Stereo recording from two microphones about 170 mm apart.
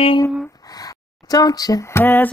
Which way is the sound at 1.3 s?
20° left (ahead or behind).